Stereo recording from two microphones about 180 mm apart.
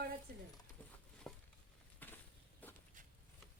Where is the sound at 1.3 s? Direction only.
5° left (ahead or behind).